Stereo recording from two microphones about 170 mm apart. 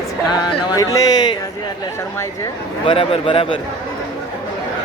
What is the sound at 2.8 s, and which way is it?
Speech, 30° left (ahead or behind).